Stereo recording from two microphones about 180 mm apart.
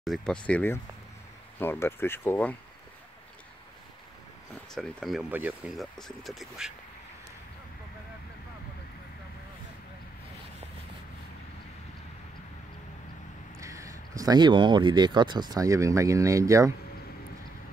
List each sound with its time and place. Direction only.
0.0 s speech: centre (ahead or behind)
4.7 s speech: centre (ahead or behind)
13.6 s speech: 15° right (ahead or behind)